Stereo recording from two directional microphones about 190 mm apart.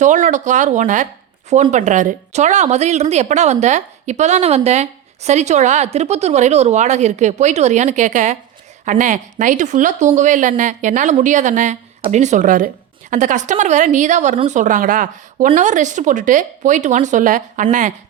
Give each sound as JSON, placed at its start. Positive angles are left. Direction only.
{"t": 0.0, "sound": "speech", "side_deg": -40}